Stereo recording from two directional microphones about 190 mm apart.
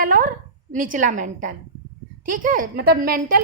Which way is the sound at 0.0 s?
45° right (ahead or behind).